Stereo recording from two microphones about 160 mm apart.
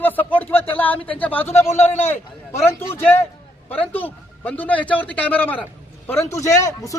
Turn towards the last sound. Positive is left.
turn(degrees=20)  # may be behind; listen again after turning